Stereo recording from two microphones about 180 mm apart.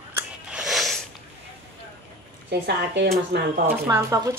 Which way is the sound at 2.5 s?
60° right (ahead or behind).